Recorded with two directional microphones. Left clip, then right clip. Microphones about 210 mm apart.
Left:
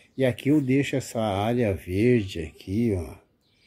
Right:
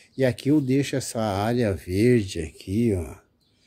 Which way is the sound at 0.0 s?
10° right (ahead or behind).